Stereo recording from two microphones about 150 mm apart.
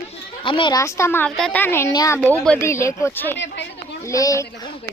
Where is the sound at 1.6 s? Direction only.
15° left (ahead or behind).